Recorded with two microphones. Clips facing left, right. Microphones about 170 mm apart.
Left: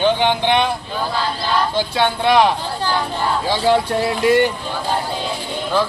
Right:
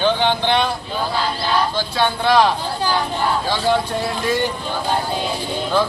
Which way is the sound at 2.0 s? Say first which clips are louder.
Left 1 dB; 20° left (ahead or behind).